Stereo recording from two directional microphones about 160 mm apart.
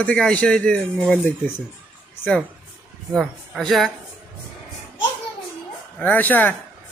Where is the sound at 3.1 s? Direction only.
Centre (ahead or behind).